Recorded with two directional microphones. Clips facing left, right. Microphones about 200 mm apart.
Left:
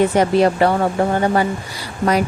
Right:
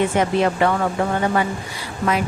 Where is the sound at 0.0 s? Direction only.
35° left (ahead or behind).